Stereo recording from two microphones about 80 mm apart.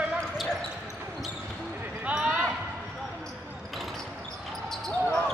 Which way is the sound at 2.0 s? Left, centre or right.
Centre.